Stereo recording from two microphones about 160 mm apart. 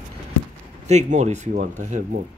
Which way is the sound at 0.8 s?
45° right (ahead or behind).